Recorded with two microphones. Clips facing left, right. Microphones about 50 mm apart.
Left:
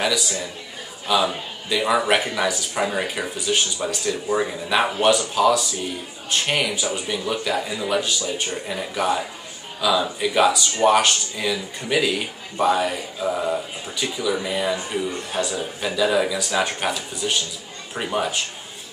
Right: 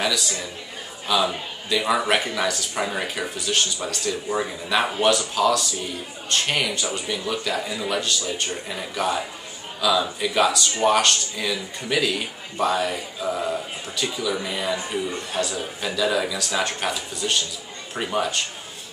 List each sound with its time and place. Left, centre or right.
0.0 s a man's voice: centre